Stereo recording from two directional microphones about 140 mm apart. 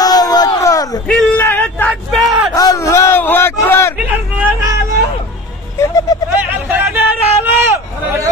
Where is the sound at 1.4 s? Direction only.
10° left (ahead or behind).